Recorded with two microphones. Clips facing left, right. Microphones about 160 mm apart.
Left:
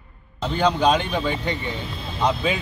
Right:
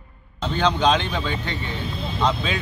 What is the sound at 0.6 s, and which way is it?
Speech, 10° left (ahead or behind).